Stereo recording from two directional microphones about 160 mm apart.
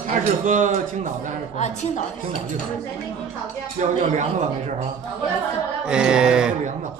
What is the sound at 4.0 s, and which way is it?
Speech, 50° right (ahead or behind).